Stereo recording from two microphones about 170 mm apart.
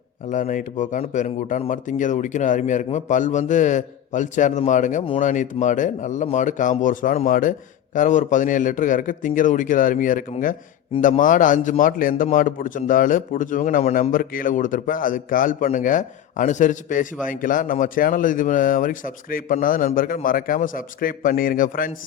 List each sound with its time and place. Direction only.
0.3 s speech: 50° left (ahead or behind)